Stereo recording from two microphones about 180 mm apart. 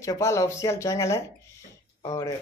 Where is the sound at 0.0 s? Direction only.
15° left (ahead or behind).